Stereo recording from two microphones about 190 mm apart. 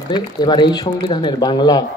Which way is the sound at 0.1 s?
20° left (ahead or behind).